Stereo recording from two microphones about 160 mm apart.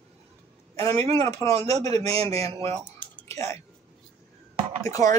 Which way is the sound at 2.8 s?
10° left (ahead or behind).